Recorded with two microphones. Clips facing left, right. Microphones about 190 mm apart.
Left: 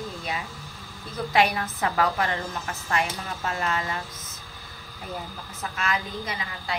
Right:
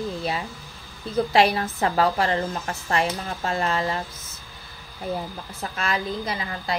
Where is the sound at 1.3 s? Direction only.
30° right (ahead or behind).